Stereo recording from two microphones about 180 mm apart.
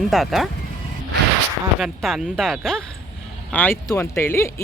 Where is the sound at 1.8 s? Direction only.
Centre (ahead or behind).